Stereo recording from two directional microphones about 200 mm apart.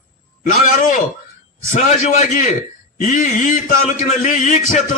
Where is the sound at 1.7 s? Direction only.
35° left (ahead or behind).